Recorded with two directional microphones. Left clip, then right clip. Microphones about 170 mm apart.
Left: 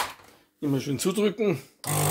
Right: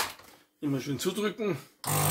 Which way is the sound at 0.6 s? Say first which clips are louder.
Left 4 dB; 30° left (ahead or behind).